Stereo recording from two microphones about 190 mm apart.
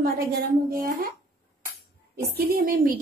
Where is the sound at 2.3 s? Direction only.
50° right (ahead or behind).